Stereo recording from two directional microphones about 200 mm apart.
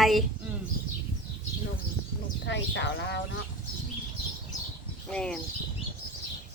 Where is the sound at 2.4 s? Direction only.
60° left (ahead or behind).